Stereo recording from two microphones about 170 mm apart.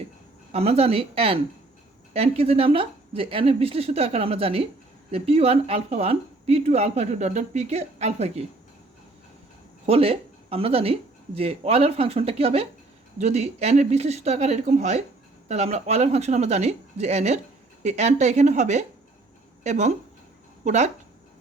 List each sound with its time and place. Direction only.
0.5 s a woman's voice: 35° right (ahead or behind)
9.8 s a woman's voice: 35° right (ahead or behind)